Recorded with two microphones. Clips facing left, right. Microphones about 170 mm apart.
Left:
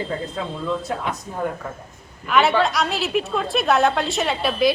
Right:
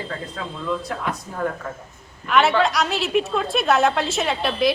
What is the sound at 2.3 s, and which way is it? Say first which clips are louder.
A woman's voice: even; centre (ahead or behind).